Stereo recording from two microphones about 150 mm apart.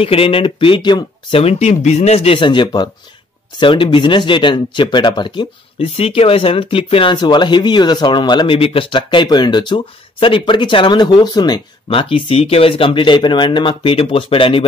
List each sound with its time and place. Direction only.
0.0 s speech: 40° left (ahead or behind)
1.4 s speech: 45° left (ahead or behind)